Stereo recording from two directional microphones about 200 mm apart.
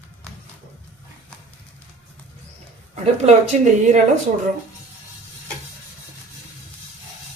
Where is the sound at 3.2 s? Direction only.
35° right (ahead or behind).